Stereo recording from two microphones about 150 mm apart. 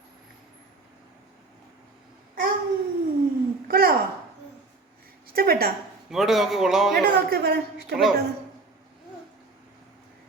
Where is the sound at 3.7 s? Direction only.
80° right.